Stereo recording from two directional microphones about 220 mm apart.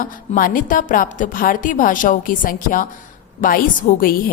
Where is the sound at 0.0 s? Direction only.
40° left (ahead or behind).